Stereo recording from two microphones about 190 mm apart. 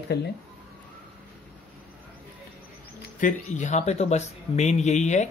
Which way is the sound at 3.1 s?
40° left (ahead or behind).